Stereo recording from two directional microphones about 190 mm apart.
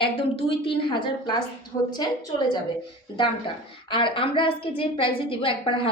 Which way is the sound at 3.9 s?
25° left (ahead or behind).